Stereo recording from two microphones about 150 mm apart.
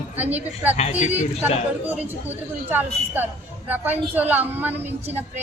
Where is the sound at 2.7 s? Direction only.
15° right (ahead or behind).